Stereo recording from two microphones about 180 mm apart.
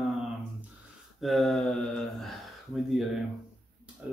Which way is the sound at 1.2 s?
Centre (ahead or behind).